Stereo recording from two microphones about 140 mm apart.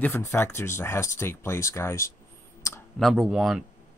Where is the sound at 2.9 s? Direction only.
Centre (ahead or behind).